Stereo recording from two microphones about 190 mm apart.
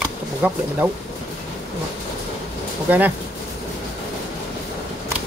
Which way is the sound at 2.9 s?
10° right (ahead or behind).